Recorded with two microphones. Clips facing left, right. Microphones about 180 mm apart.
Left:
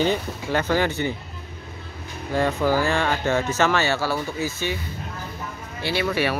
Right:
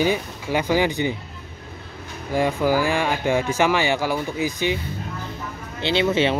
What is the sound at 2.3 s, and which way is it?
Speech, 10° right (ahead or behind).